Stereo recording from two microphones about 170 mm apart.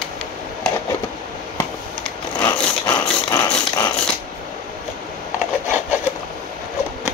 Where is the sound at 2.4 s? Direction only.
20° left (ahead or behind).